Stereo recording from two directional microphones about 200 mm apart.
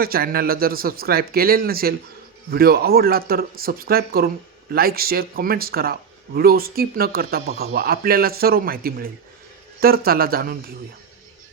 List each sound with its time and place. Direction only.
0.0 s speech: 50° right (ahead or behind)